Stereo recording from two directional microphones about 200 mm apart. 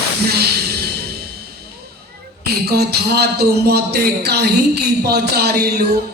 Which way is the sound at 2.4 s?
55° right (ahead or behind).